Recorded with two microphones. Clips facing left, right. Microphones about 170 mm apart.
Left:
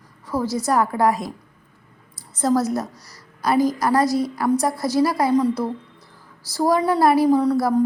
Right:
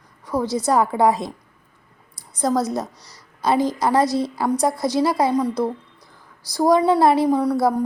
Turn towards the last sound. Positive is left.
turn(degrees=-15)  # may be behind; listen again after turning